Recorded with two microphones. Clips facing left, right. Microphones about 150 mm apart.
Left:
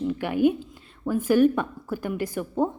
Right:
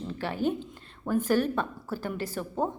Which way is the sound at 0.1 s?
15° left (ahead or behind).